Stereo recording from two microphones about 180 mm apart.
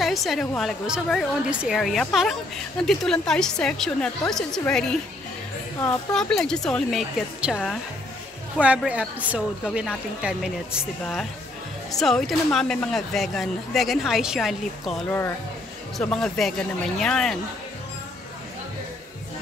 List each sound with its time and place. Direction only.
0.0 s a woman's voice: centre (ahead or behind)
6.1 s a woman's voice: 5° left (ahead or behind)
8.5 s a woman's voice: 5° right (ahead or behind)
11.9 s a woman's voice: centre (ahead or behind)